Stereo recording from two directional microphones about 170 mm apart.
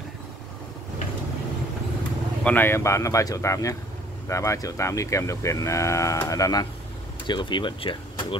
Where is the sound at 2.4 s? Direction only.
10° left (ahead or behind).